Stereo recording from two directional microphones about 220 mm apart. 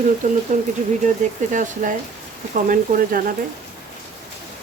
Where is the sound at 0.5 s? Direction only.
35° right (ahead or behind).